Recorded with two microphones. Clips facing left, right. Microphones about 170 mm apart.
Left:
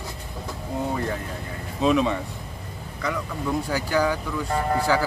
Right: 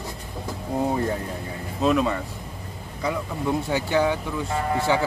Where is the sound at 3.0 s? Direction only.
25° right (ahead or behind).